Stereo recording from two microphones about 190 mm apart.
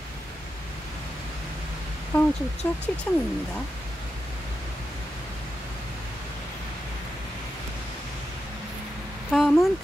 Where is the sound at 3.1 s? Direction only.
10° left (ahead or behind).